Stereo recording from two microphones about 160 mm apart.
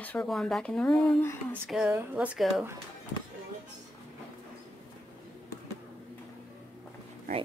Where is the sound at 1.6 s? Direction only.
5° right (ahead or behind).